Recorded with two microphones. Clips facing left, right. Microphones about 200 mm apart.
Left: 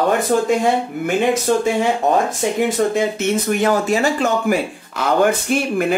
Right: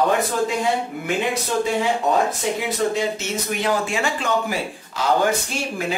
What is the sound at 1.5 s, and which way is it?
Speech, 50° left (ahead or behind).